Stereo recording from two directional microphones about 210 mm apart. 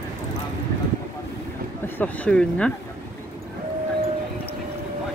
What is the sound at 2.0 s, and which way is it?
Speech, 5° left (ahead or behind).